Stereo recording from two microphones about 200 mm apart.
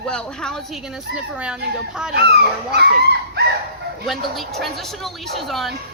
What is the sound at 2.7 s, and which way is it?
Speech, 55° right (ahead or behind).